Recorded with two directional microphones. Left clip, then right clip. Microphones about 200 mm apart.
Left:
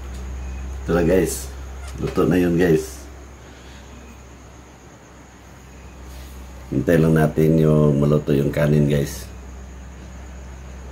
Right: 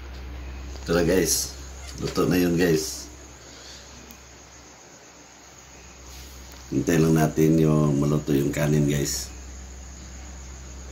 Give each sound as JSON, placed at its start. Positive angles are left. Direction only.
{"t": 0.8, "sound": "speech", "side_deg": 0}
{"t": 6.9, "sound": "speech", "side_deg": 25}